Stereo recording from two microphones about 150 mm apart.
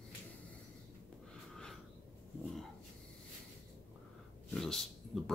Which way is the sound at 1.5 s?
5° left (ahead or behind).